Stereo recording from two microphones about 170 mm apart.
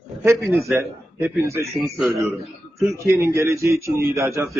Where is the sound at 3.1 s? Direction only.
15° right (ahead or behind).